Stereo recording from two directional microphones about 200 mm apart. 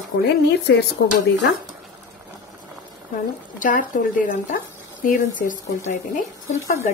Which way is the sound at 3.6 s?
40° left (ahead or behind).